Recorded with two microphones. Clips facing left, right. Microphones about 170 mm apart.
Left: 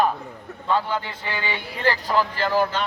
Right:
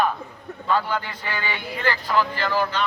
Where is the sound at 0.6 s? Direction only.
25° left (ahead or behind).